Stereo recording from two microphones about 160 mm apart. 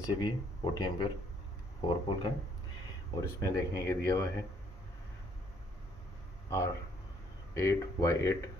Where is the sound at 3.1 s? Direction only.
20° left (ahead or behind).